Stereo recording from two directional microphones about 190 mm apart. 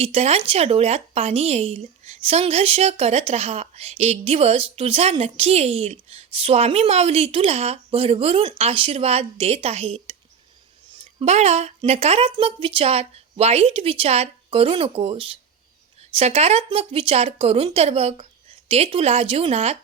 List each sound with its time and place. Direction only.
0.0 s speech: 35° right (ahead or behind)
11.2 s speech: 35° right (ahead or behind)